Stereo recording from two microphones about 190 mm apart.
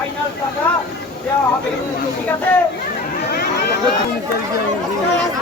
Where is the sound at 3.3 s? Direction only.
55° left (ahead or behind).